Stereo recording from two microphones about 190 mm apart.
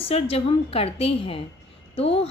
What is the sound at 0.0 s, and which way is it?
A woman's voice, 30° left (ahead or behind).